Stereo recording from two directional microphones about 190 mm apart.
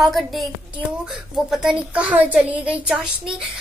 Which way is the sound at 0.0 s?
Centre (ahead or behind).